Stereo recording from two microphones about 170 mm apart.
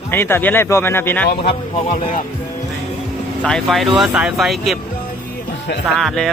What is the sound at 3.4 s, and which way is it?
Speech, 5° left (ahead or behind).